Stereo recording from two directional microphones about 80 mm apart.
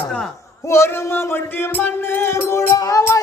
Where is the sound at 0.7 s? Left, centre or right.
Left.